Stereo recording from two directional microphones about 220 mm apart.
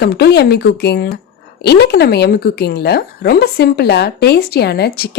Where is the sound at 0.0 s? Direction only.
50° left (ahead or behind).